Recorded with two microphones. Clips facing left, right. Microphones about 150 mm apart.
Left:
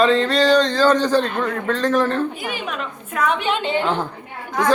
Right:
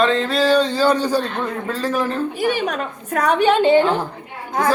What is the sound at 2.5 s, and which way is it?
A woman's voice, 40° right (ahead or behind).